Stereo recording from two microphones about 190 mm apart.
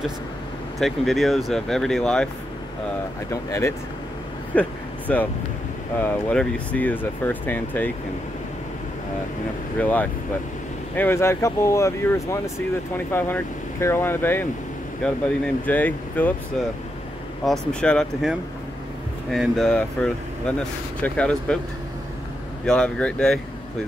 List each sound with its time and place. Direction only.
0.7 s speech: centre (ahead or behind)
3.3 s speech: 15° left (ahead or behind)
4.6 s a sound: 10° left (ahead or behind)
5.9 s speech: 10° left (ahead or behind)
9.8 s speech: 10° left (ahead or behind)
17.5 s speech: 5° left (ahead or behind)
22.7 s speech: 5° left (ahead or behind)